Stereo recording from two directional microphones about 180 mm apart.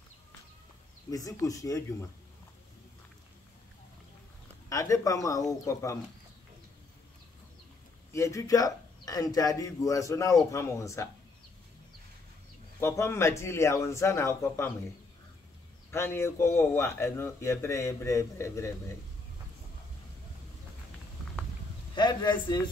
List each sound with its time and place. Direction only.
1.1 s speech: 20° left (ahead or behind)
4.6 s speech: 20° left (ahead or behind)
8.1 s speech: 15° left (ahead or behind)
12.8 s speech: 15° left (ahead or behind)
15.9 s speech: 15° left (ahead or behind)
21.9 s speech: 25° left (ahead or behind)